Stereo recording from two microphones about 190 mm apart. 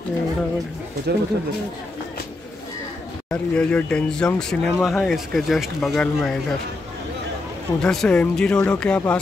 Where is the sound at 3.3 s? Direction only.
5° left (ahead or behind).